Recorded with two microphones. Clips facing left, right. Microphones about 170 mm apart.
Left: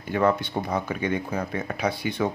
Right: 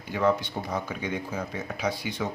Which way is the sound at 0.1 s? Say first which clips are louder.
Left 2 dB; 55° left (ahead or behind).